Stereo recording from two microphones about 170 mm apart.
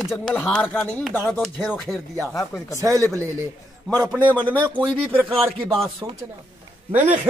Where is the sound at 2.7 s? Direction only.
20° right (ahead or behind).